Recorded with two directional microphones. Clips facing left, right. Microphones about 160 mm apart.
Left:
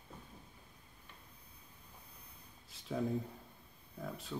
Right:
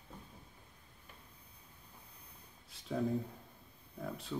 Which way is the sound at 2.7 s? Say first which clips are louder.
Right 1 dB; centre (ahead or behind).